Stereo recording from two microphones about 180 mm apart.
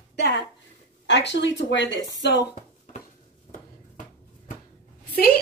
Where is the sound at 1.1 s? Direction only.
80° left.